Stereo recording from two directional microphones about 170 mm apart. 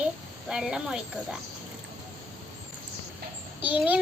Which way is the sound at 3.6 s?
10° right (ahead or behind).